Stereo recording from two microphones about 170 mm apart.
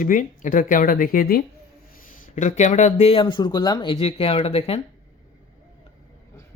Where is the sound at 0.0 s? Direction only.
50° left (ahead or behind).